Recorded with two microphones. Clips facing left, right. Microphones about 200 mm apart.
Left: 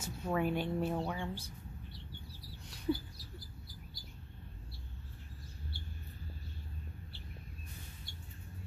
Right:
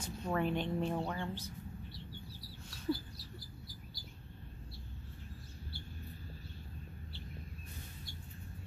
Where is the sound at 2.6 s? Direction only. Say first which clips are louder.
Left 2 dB; 15° left (ahead or behind).